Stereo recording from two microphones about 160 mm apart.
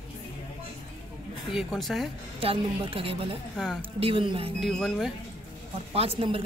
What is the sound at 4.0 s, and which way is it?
Speech, 35° right (ahead or behind).